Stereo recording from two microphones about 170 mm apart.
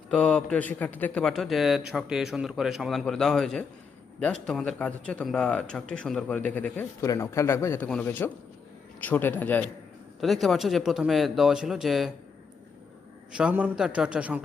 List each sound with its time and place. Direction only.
0.1 s a man's voice: 5° left (ahead or behind)
13.3 s a man's voice: 5° right (ahead or behind)